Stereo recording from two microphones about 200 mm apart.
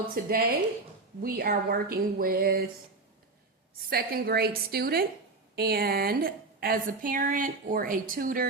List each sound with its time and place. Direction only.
0.1 s a woman's voice: 50° right (ahead or behind)
3.8 s a woman's voice: 50° right (ahead or behind)